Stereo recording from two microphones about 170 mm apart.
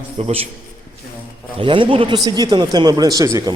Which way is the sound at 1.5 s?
30° right (ahead or behind).